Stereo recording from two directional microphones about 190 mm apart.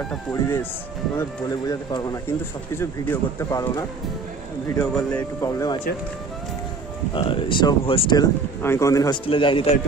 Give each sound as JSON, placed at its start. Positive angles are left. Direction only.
{"t": 0.1, "sound": "speech", "side_deg": 10}
{"t": 1.7, "sound": "speech", "side_deg": 20}
{"t": 4.9, "sound": "speech", "side_deg": 15}
{"t": 7.2, "sound": "speech", "side_deg": 25}
{"t": 8.6, "sound": "speech", "side_deg": 15}
{"t": 9.2, "sound": "speech", "side_deg": 25}